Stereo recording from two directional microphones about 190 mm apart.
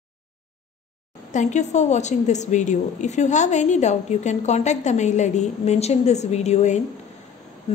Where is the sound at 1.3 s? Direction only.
40° left (ahead or behind).